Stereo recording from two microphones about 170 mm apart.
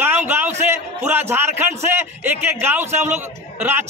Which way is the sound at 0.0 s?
10° right (ahead or behind).